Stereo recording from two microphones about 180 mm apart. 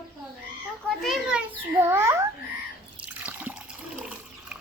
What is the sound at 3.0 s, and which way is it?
Water, 10° right (ahead or behind).